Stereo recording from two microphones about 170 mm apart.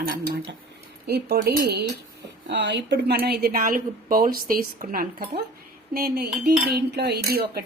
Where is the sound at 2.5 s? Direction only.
90° right.